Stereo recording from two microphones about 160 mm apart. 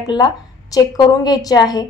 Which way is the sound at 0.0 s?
25° left (ahead or behind).